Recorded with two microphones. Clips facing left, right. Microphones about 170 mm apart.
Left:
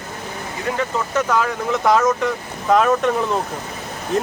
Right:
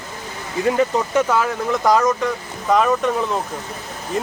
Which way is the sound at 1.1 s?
10° right (ahead or behind).